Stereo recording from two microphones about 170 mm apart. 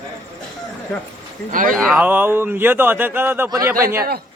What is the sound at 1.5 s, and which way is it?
Speech, 50° right (ahead or behind).